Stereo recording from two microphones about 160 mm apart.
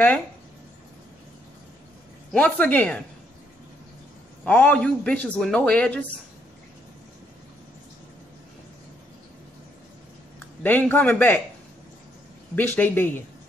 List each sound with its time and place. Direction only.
2.3 s speech: 10° left (ahead or behind)
4.5 s speech: 10° left (ahead or behind)
10.6 s speech: 10° left (ahead or behind)
12.5 s speech: 10° left (ahead or behind)